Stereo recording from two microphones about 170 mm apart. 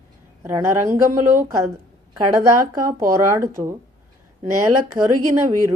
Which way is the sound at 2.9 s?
55° right (ahead or behind).